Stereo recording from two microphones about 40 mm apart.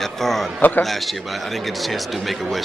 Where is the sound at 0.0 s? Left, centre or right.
Centre.